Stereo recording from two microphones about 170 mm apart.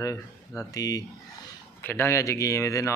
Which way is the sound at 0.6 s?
20° left (ahead or behind).